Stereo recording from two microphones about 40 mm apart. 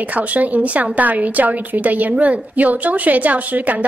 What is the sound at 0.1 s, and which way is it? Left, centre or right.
A woman's voice, right.